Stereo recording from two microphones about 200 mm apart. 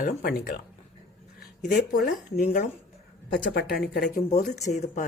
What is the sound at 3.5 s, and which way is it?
Speech, 50° left (ahead or behind).